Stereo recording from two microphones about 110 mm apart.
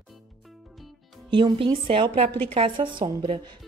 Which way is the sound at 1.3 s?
50° right (ahead or behind).